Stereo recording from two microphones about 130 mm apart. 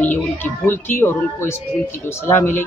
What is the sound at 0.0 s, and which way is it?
A woman's voice, 15° left (ahead or behind).